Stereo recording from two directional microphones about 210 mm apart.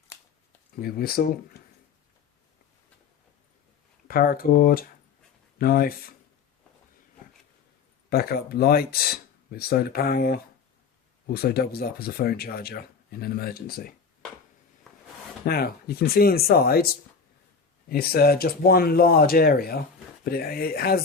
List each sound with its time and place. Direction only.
0.8 s speech: 45° left (ahead or behind)
4.1 s speech: 45° left (ahead or behind)
8.1 s speech: 45° left (ahead or behind)
15.4 s speech: 45° left (ahead or behind)